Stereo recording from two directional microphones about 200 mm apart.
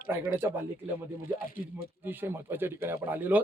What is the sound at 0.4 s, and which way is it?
Speech, 15° right (ahead or behind).